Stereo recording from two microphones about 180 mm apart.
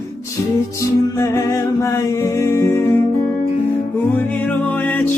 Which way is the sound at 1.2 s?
15° left (ahead or behind).